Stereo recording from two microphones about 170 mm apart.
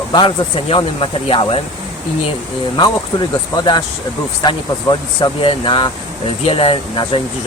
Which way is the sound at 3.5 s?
25° left (ahead or behind).